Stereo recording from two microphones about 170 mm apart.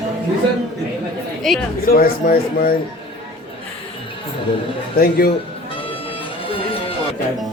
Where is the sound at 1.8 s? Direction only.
60° left (ahead or behind).